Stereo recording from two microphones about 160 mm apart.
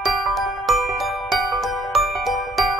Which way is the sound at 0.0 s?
Centre (ahead or behind).